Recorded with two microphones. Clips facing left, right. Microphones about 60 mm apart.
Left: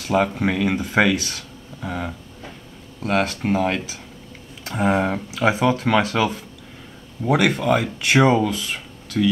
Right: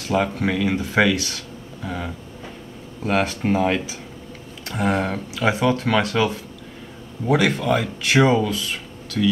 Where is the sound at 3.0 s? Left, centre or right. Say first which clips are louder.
Even; centre.